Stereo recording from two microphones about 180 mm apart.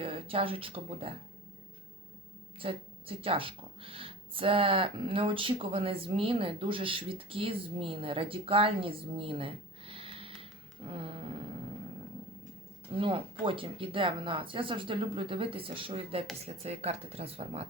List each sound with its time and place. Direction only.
0.0 s speech: 30° right (ahead or behind)
2.6 s speech: 30° right (ahead or behind)
10.8 s a sound: 30° right (ahead or behind)
12.9 s speech: 30° right (ahead or behind)